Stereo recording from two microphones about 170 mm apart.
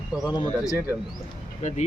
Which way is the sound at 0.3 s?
25° left (ahead or behind).